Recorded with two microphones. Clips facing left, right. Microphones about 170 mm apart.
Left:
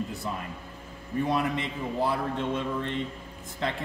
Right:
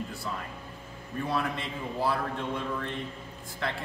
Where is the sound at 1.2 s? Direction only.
20° left (ahead or behind).